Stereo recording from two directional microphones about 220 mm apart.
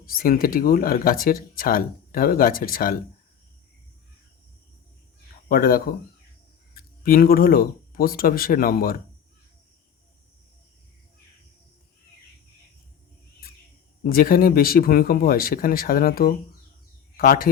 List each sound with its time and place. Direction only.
0.0 s speech: 40° left (ahead or behind)
5.5 s speech: 40° left (ahead or behind)
14.0 s speech: 40° left (ahead or behind)